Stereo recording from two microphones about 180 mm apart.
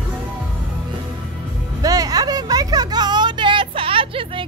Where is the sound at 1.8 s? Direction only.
20° right (ahead or behind).